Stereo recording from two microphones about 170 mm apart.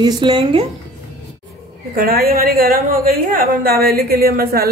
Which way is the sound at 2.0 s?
60° right (ahead or behind).